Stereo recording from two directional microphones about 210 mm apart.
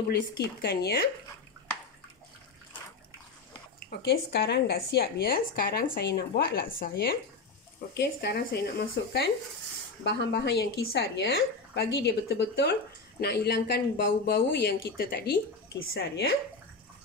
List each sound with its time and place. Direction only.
0.1 s a woman's voice: 50° left (ahead or behind)
3.9 s a woman's voice: 50° left (ahead or behind)